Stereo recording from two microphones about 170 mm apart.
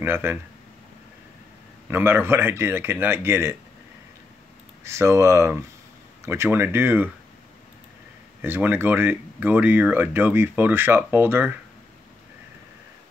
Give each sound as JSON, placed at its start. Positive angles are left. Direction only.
{"t": 0.0, "sound": "speech", "side_deg": -15}
{"t": 1.9, "sound": "speech", "side_deg": -15}
{"t": 4.8, "sound": "speech", "side_deg": -15}
{"t": 8.4, "sound": "speech", "side_deg": -10}